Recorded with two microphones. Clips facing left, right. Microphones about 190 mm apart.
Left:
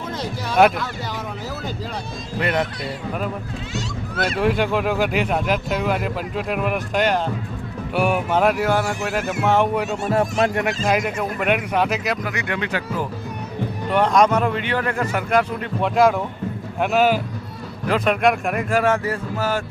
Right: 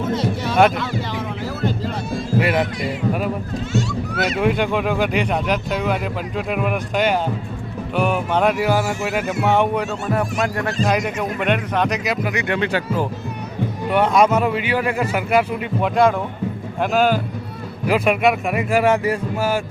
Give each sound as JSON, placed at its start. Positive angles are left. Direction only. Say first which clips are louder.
{"t": 0.1, "sound": "speech", "louder": "right 5 dB", "side_deg": 0}
{"t": 2.4, "sound": "speech", "louder": "right 2 dB", "side_deg": -5}
{"t": 4.4, "sound": "speech", "louder": "even", "side_deg": 0}
{"t": 10.1, "sound": "speech", "louder": "left 3 dB", "side_deg": 25}
{"t": 10.8, "sound": "speech", "louder": "right 2 dB", "side_deg": 0}
{"t": 12.2, "sound": "speech", "louder": "right 4 dB", "side_deg": -20}
{"t": 13.9, "sound": "a man's voice", "louder": "right 1 dB", "side_deg": -5}
{"t": 17.8, "sound": "a man's voice", "louder": "right 1 dB", "side_deg": -10}